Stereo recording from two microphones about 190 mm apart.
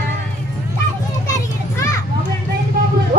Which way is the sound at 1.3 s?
15° left (ahead or behind).